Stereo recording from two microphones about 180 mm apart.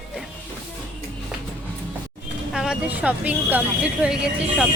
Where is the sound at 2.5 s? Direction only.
5° right (ahead or behind).